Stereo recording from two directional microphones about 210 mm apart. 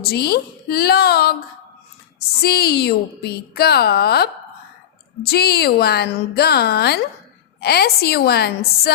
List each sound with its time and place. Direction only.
0.0 s a woman's voice: 50° left (ahead or behind)
2.4 s a woman's voice: 50° left (ahead or behind)